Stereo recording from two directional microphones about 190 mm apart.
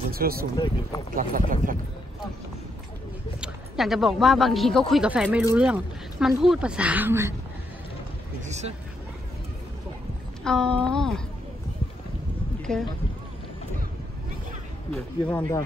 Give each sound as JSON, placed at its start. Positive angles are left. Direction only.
{"t": 0.1, "sound": "speech", "side_deg": -50}
{"t": 3.3, "sound": "speech", "side_deg": 0}
{"t": 8.5, "sound": "vehicle", "side_deg": -35}
{"t": 10.4, "sound": "speech", "side_deg": 5}
{"t": 12.7, "sound": "speech", "side_deg": 5}
{"t": 14.9, "sound": "speech", "side_deg": 10}